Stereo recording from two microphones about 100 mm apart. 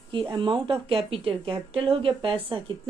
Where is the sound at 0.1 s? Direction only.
55° right (ahead or behind).